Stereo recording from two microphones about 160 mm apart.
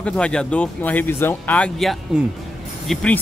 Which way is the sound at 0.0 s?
5° left (ahead or behind).